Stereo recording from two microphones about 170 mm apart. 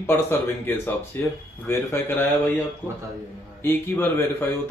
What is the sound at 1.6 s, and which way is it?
Speech, 15° left (ahead or behind).